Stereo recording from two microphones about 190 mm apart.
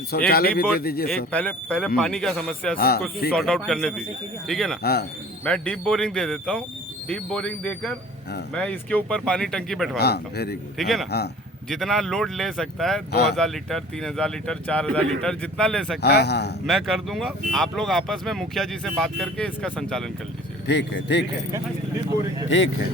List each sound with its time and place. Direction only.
0.3 s speech: 55° left (ahead or behind)
1.3 s speech: 5° left (ahead or behind)
2.7 s speech: 55° left (ahead or behind)
3.3 s speech: centre (ahead or behind)
4.8 s speech: 55° left (ahead or behind)
5.5 s speech: 5° left (ahead or behind)
10.0 s speech: 60° left (ahead or behind)
10.8 s speech: centre (ahead or behind)
16.0 s speech: 60° left (ahead or behind)
16.6 s speech: centre (ahead or behind)
20.7 s speech: 65° left (ahead or behind)
22.4 s speech: 80° left